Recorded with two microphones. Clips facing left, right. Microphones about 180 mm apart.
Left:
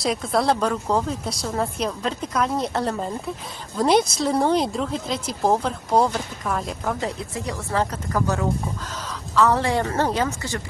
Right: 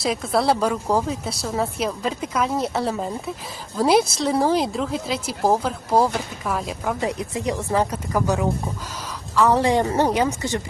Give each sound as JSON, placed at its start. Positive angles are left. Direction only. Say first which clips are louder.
{"t": 0.0, "sound": "speech", "louder": "right 1 dB", "side_deg": 0}